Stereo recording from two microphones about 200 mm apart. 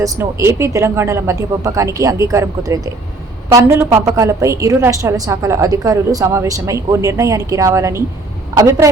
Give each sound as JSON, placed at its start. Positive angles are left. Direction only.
{"t": 0.0, "sound": "a woman's voice", "side_deg": -15}